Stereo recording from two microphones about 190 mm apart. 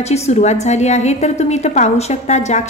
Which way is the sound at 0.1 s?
35° left (ahead or behind).